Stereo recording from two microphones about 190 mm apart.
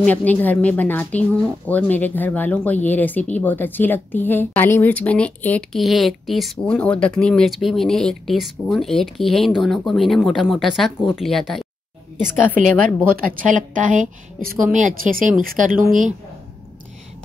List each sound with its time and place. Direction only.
0.0 s a woman's voice: 10° left (ahead or behind)
12.5 s a woman's voice: 45° right (ahead or behind)